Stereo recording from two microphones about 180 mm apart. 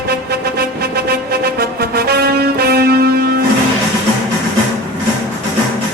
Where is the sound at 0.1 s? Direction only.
60° right (ahead or behind).